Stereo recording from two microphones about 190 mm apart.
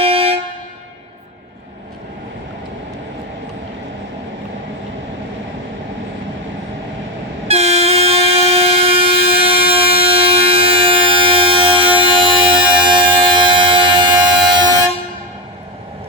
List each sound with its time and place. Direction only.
0.0 s vehicle horn: 30° right (ahead or behind)
7.4 s train: 35° right (ahead or behind)